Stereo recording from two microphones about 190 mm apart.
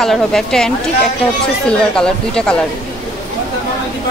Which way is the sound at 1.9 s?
5° left (ahead or behind).